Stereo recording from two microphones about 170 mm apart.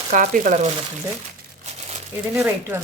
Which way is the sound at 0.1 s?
45° right (ahead or behind).